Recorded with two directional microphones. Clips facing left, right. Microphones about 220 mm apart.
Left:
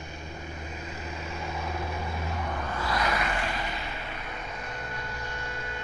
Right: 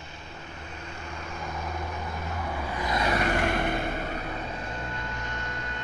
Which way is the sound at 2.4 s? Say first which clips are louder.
Right 2 dB; 10° right (ahead or behind).